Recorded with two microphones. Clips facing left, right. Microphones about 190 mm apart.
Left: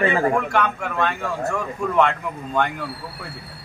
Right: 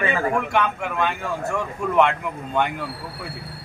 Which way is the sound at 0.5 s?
5° right (ahead or behind).